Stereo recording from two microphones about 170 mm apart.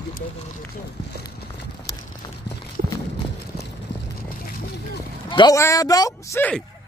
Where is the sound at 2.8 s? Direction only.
45° right (ahead or behind).